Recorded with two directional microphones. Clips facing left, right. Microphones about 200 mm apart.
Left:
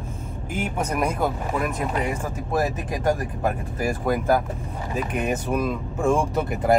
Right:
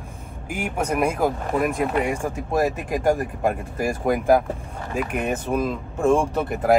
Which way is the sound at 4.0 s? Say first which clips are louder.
Right 4 dB; 15° right (ahead or behind).